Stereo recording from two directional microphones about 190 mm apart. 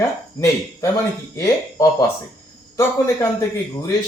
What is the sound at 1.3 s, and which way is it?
A man's voice, 15° left (ahead or behind).